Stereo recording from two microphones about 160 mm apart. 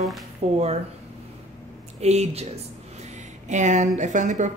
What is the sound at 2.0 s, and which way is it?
Speech, 40° right (ahead or behind).